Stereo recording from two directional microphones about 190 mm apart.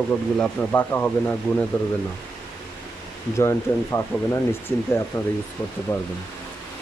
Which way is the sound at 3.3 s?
15° left (ahead or behind).